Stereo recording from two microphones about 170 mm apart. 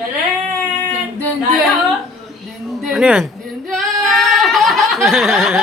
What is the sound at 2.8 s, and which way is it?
Speech, 5° right (ahead or behind).